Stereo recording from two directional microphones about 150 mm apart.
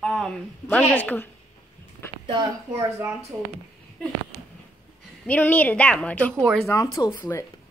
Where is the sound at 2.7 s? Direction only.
15° right (ahead or behind).